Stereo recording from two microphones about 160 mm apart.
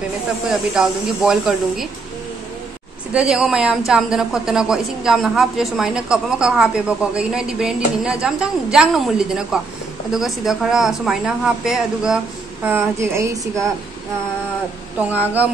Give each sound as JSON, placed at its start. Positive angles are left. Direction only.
{"t": 0.5, "sound": "a woman's voice", "side_deg": -5}
{"t": 3.1, "sound": "a woman's voice", "side_deg": -5}
{"t": 12.6, "sound": "a woman's voice", "side_deg": -15}
{"t": 15.0, "sound": "a woman's voice", "side_deg": -10}